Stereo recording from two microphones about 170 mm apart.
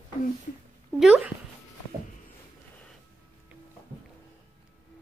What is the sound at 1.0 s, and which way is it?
Speech, 5° right (ahead or behind).